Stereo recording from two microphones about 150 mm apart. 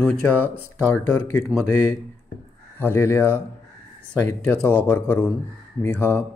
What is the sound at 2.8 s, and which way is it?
Speech, 15° left (ahead or behind).